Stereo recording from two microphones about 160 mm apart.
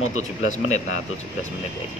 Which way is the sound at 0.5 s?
45° left (ahead or behind).